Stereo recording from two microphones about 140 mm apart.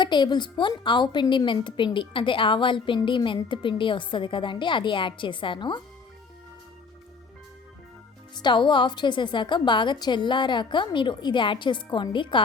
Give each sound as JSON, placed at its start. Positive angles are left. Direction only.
{"t": 0.0, "sound": "a woman's voice", "side_deg": 35}
{"t": 8.4, "sound": "a woman's voice", "side_deg": 35}